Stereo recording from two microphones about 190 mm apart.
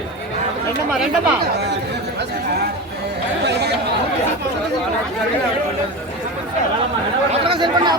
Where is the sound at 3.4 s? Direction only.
60° right (ahead or behind).